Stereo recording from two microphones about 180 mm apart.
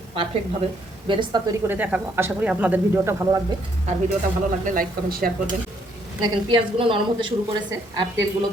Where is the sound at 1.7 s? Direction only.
10° right (ahead or behind).